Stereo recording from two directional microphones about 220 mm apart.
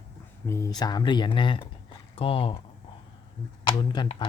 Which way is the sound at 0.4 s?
15° left (ahead or behind).